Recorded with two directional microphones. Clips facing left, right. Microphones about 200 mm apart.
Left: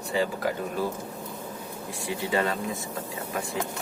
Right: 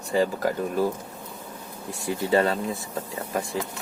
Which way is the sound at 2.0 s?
40° right (ahead or behind).